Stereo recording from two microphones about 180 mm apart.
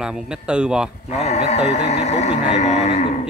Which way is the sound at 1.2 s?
35° left (ahead or behind).